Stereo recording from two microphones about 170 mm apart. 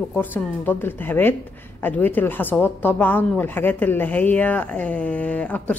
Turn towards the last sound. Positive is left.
turn(degrees=10)  # may be behind; listen again after turning